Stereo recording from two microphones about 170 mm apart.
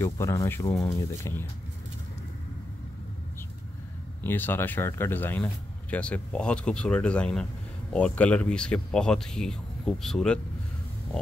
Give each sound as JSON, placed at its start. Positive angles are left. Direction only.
{"t": 0.0, "sound": "speech", "side_deg": 15}
{"t": 4.2, "sound": "speech", "side_deg": 10}